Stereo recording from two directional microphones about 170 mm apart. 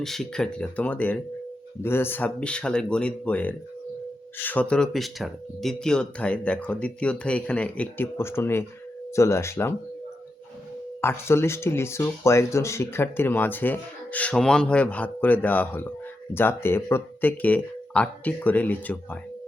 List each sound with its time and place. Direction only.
0.0 s speech: centre (ahead or behind)
11.0 s speech: 15° left (ahead or behind)